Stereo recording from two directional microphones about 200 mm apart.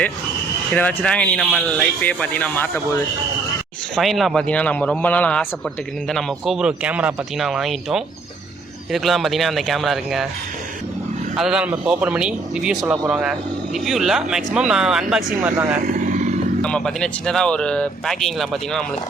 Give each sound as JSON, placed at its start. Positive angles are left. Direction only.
{"t": 0.7, "sound": "speech", "side_deg": 5}
{"t": 3.9, "sound": "speech", "side_deg": 0}
{"t": 11.3, "sound": "speech", "side_deg": -5}
{"t": 15.8, "sound": "vehicle", "side_deg": -40}
{"t": 16.6, "sound": "speech", "side_deg": 5}